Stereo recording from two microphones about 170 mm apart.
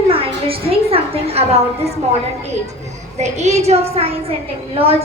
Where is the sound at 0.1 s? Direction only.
35° right (ahead or behind).